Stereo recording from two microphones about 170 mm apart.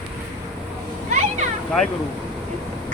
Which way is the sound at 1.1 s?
45° right (ahead or behind).